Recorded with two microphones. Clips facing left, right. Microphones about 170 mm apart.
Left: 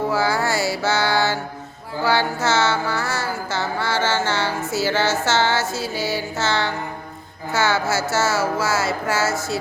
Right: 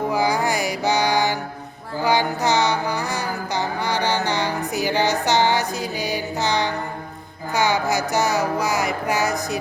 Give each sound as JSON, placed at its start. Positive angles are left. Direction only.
{"t": 0.1, "sound": "music", "side_deg": -15}